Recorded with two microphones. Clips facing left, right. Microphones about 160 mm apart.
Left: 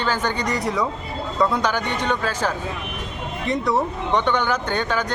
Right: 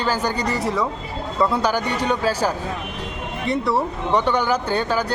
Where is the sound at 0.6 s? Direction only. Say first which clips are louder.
Right 1 dB; centre (ahead or behind).